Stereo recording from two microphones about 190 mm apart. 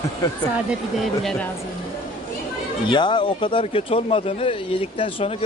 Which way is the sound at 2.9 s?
25° left (ahead or behind).